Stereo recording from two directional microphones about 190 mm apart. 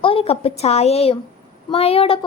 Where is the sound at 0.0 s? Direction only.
30° left (ahead or behind).